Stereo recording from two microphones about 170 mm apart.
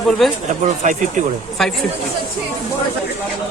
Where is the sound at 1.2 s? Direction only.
45° right (ahead or behind).